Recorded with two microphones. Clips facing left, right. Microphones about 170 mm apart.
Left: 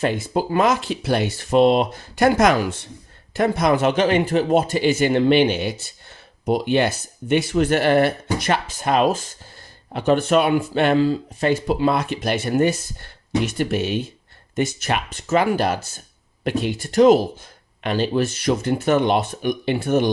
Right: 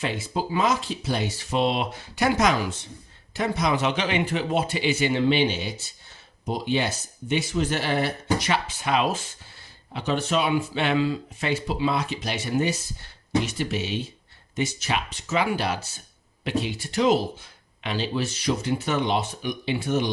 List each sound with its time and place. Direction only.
0.0 s speech: 50° left (ahead or behind)